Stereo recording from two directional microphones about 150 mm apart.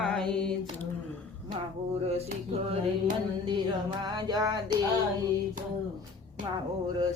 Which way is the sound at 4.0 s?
25° right (ahead or behind).